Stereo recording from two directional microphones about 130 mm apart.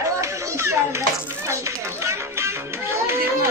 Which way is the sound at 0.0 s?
25° right (ahead or behind).